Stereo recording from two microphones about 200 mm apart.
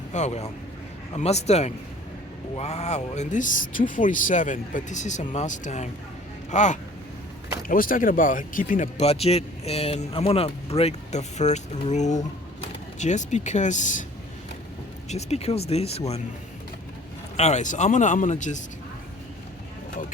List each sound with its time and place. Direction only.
0.1 s speech: 35° left (ahead or behind)
15.1 s speech: 30° left (ahead or behind)
17.3 s speech: 35° left (ahead or behind)